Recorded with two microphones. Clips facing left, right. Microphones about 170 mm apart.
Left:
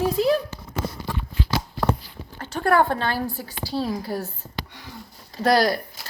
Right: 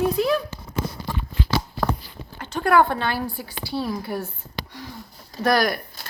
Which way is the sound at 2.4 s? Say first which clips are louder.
Right 1 dB; 45° left (ahead or behind).